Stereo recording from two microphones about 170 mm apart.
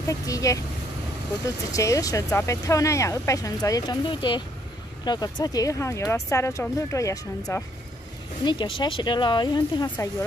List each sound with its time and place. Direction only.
0.1 s speech: 20° left (ahead or behind)
8.5 s speech: 30° left (ahead or behind)